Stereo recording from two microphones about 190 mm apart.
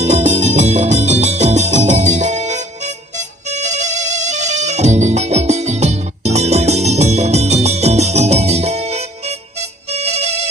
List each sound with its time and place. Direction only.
0.0 s music: 35° right (ahead or behind)